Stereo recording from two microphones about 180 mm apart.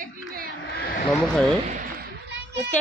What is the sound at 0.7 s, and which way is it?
Speech, 60° left (ahead or behind).